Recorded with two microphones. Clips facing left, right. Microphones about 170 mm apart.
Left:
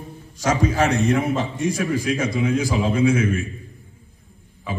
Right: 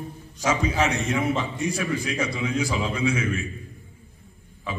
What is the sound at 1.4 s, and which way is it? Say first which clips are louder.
A man's voice: left 4 dB; 50° left (ahead or behind).